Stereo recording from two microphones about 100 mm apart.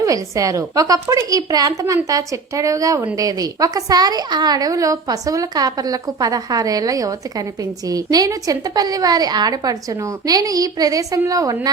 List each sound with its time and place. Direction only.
0.0 s a woman's voice: 35° right (ahead or behind)